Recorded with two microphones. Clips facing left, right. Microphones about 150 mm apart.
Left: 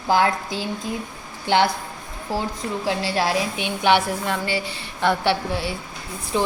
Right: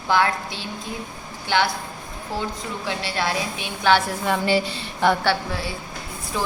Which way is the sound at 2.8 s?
35° left (ahead or behind).